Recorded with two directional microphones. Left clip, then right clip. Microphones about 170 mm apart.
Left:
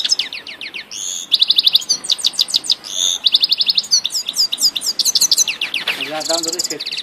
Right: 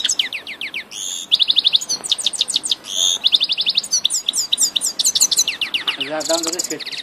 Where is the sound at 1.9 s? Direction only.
30° right (ahead or behind).